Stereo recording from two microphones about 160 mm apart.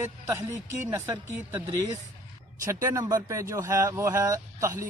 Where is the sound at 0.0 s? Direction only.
15° right (ahead or behind).